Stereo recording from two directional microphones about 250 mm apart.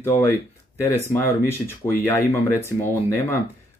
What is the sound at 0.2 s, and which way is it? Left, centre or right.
Speech, centre.